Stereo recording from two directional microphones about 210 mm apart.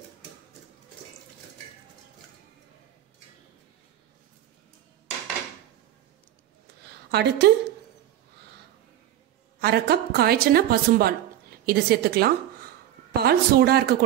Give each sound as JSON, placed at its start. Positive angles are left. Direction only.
{"t": 7.1, "sound": "a woman's voice", "side_deg": -50}
{"t": 9.6, "sound": "a woman's voice", "side_deg": -50}